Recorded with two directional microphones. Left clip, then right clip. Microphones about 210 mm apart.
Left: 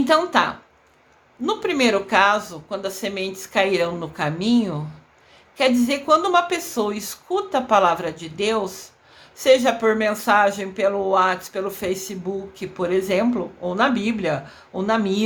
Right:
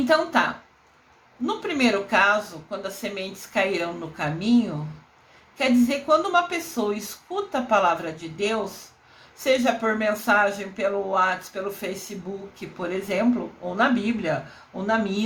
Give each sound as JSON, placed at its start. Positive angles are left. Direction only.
{"t": 0.0, "sound": "a woman's voice", "side_deg": 30}